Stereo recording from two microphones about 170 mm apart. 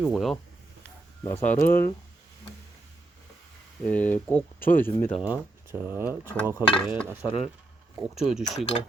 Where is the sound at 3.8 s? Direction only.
10° left (ahead or behind).